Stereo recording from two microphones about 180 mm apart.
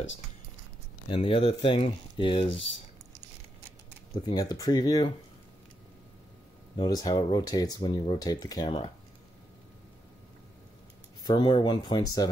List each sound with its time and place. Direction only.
1.0 s speech: 30° left (ahead or behind)
4.1 s speech: 20° left (ahead or behind)
6.8 s speech: 20° left (ahead or behind)
11.2 s speech: 25° left (ahead or behind)